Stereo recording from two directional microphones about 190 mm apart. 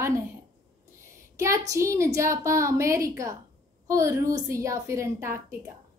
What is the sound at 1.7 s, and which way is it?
A woman's voice, 15° right (ahead or behind).